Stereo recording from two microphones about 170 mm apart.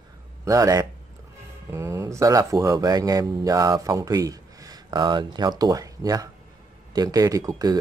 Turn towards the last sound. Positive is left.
turn(degrees=-20)  # may be behind; listen again after turning